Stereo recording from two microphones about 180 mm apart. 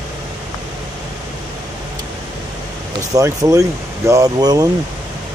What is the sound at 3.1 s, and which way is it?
Speech, 20° right (ahead or behind).